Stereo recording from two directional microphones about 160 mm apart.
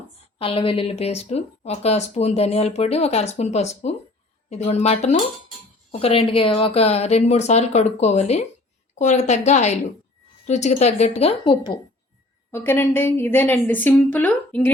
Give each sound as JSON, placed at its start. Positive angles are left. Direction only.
{"t": 0.3, "sound": "a woman's voice", "side_deg": 35}
{"t": 12.5, "sound": "a woman's voice", "side_deg": 15}